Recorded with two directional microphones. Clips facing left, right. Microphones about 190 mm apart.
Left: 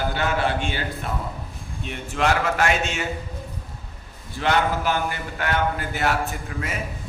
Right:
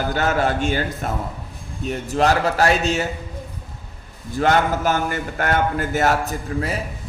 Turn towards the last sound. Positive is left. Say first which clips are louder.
# right 6 dB
turn(degrees=-35)  # may be behind; listen again after turning